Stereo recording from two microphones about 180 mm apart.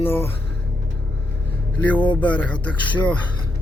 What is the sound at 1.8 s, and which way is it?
Speech, 10° left (ahead or behind).